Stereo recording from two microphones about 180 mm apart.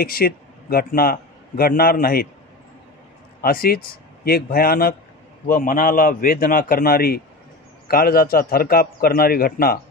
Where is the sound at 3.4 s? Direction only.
55° left (ahead or behind).